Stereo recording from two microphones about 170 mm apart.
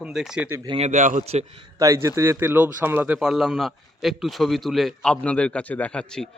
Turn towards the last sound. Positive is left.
turn(degrees=5)  # may be behind; listen again after turning